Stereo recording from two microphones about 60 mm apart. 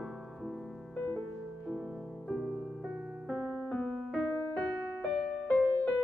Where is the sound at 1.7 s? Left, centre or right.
Centre.